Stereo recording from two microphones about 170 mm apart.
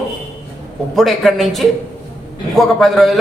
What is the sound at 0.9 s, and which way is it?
A man's voice, centre (ahead or behind).